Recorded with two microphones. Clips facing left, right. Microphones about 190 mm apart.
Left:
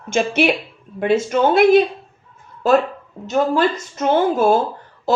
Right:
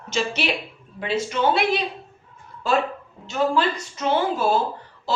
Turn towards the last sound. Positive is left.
turn(degrees=50)  # may be behind; listen again after turning